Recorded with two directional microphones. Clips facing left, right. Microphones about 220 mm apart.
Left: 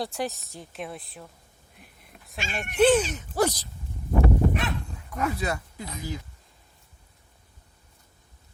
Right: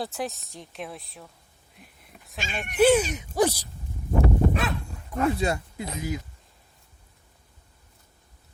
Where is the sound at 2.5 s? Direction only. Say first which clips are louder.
Right 1 dB; 5° right (ahead or behind).